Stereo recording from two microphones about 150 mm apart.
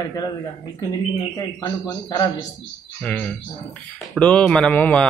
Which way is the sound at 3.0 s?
10° left (ahead or behind).